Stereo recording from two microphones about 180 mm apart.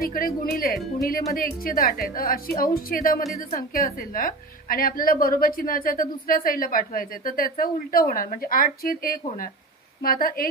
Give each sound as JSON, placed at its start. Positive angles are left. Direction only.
{"t": 0.0, "sound": "a woman's voice", "side_deg": 55}